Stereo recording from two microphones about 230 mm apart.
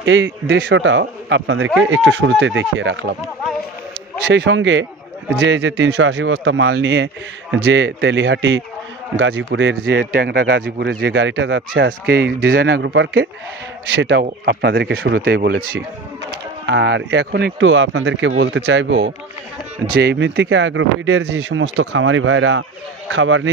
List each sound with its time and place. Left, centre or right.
0.0 s speech: right
4.3 s speech: right